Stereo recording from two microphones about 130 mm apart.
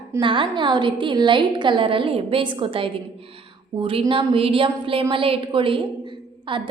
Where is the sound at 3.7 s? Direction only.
45° right (ahead or behind).